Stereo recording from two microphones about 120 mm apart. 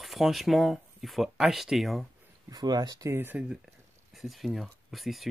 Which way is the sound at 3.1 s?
15° right (ahead or behind).